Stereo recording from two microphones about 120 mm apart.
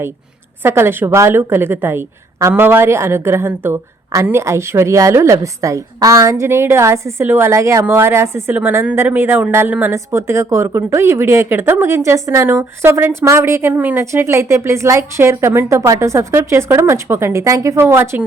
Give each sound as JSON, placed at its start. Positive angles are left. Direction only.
{"t": 0.6, "sound": "a woman's voice", "side_deg": -20}